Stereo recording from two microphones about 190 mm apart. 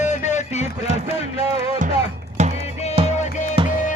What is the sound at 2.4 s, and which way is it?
Music, 35° right (ahead or behind).